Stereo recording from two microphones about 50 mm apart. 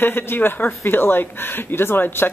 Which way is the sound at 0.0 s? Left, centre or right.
Left.